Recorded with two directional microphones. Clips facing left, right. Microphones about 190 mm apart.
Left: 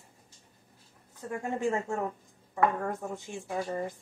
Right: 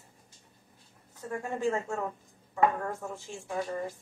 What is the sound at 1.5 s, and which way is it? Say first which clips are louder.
A woman's voice: left 1 dB; 20° left (ahead or behind).